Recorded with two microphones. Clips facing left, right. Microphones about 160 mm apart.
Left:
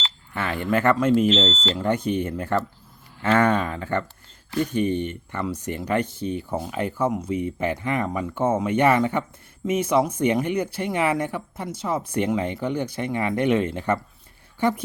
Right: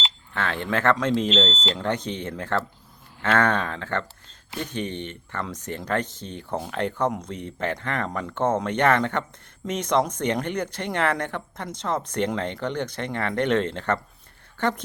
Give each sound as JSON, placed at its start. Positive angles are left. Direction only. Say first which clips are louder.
{"t": 0.3, "sound": "speech", "louder": "left 3 dB", "side_deg": 10}